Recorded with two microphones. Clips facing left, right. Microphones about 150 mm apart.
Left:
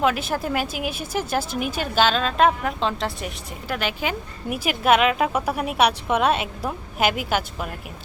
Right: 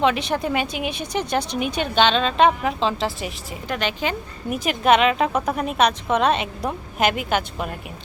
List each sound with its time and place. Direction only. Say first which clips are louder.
0.0 s speech: right 2 dB; 5° left (ahead or behind)